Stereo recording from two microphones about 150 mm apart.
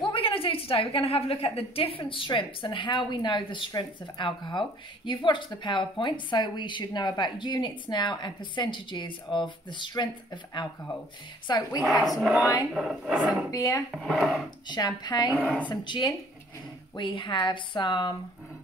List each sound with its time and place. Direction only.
0.0 s a woman's voice: 35° left (ahead or behind)
11.8 s speech: centre (ahead or behind)
13.5 s speech: 25° left (ahead or behind)
13.9 s speech: centre (ahead or behind)
14.7 s speech: 25° left (ahead or behind)
15.3 s a woman's voice: 10° left (ahead or behind)
15.7 s speech: 30° left (ahead or behind)